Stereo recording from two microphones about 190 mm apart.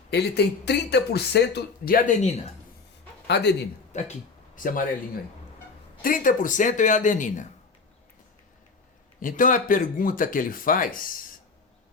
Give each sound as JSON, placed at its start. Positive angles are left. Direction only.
{"t": 0.1, "sound": "speech", "side_deg": 60}
{"t": 3.2, "sound": "speech", "side_deg": 60}
{"t": 3.9, "sound": "speech", "side_deg": 40}
{"t": 6.0, "sound": "speech", "side_deg": 45}
{"t": 9.2, "sound": "speech", "side_deg": 45}